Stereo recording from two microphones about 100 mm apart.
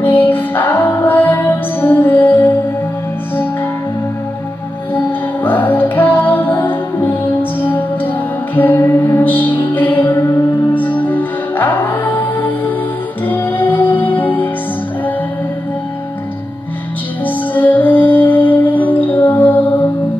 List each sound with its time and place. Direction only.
0.0 s music: 20° left (ahead or behind)
4.9 s music: 20° left (ahead or behind)
10.1 s music: 30° left (ahead or behind)
10.7 s music: 15° left (ahead or behind)
17.6 s music: 15° left (ahead or behind)